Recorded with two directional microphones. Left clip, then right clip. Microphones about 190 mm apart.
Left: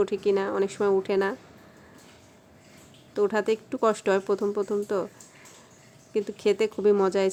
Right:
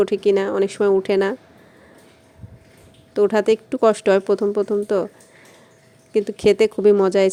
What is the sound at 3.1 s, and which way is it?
Speech, 25° right (ahead or behind).